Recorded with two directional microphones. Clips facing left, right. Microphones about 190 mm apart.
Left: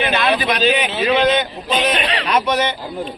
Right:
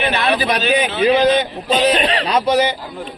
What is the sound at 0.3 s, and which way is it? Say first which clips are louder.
A man's voice: even; 35° right (ahead or behind).